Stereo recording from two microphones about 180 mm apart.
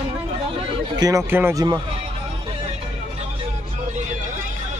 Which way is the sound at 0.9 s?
20° right (ahead or behind).